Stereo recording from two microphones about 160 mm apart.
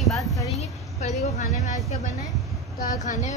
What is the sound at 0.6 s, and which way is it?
A woman's voice, 45° left (ahead or behind).